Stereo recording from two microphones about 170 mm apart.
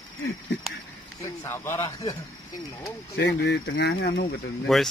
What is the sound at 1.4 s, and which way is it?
Speech, 15° left (ahead or behind).